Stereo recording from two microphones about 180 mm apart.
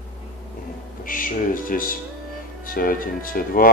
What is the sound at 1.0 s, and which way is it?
Music, 50° left (ahead or behind).